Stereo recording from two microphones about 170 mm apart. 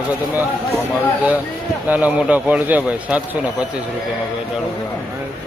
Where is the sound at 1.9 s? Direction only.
10° right (ahead or behind).